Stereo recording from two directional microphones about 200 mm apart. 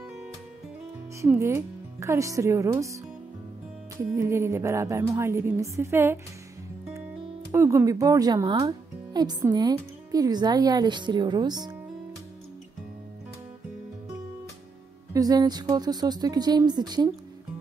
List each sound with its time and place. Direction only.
1.2 s a woman's voice: 15° right (ahead or behind)
7.5 s speech: 15° right (ahead or behind)
15.1 s speech: 20° right (ahead or behind)